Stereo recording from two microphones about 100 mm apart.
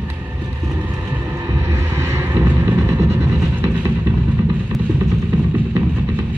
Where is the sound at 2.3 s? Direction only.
20° right (ahead or behind).